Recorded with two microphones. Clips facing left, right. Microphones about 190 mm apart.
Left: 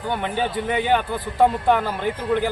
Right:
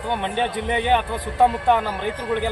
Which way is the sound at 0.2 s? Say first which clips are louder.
Even; 25° right (ahead or behind).